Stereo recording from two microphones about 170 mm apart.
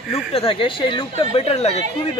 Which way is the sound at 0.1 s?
35° left (ahead or behind).